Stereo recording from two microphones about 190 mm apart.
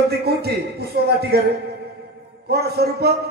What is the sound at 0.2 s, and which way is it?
A man's voice, 55° right (ahead or behind).